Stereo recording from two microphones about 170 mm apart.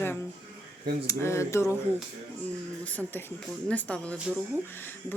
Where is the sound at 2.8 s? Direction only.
10° left (ahead or behind).